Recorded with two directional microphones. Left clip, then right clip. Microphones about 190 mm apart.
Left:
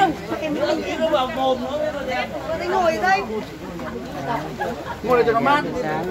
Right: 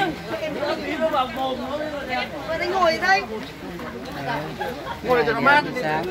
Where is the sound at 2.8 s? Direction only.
20° right (ahead or behind).